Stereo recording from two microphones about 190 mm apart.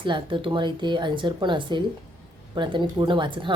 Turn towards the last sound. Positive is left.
turn(degrees=-25)  # may be behind; listen again after turning